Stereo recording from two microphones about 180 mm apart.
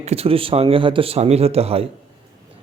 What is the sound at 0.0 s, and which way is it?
A man's voice, 35° right (ahead or behind).